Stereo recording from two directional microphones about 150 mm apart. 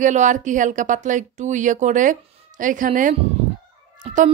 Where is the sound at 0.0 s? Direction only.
55° right (ahead or behind).